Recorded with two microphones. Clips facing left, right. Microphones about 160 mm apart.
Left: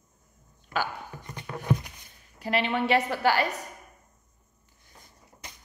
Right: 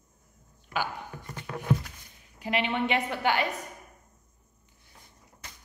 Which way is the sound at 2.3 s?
15° right (ahead or behind).